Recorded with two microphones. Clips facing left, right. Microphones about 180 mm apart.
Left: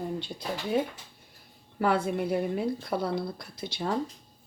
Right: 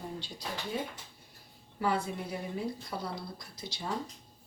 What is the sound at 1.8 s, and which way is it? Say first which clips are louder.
A woman's voice: left 6 dB; 65° left (ahead or behind).